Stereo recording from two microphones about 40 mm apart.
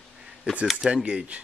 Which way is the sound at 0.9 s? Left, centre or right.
Centre.